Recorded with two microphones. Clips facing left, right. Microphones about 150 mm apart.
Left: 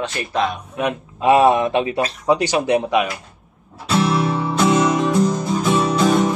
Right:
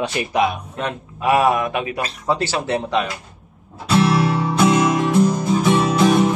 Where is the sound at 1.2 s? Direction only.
25° left (ahead or behind).